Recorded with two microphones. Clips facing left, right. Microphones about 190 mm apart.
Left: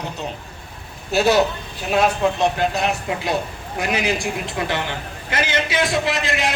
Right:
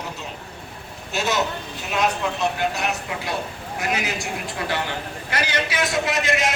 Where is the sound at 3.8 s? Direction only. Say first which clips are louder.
Left 5 dB; 20° left (ahead or behind).